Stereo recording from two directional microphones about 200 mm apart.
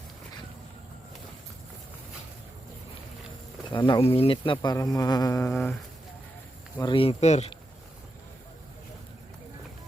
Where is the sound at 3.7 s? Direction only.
20° left (ahead or behind).